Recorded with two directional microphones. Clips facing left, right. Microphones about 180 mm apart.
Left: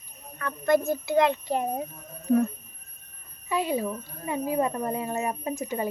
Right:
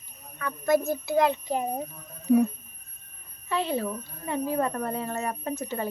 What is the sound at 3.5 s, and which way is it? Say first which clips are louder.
Speech: left 1 dB; 10° left (ahead or behind).